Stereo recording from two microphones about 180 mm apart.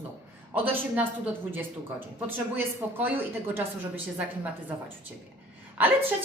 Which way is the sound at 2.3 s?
10° right (ahead or behind).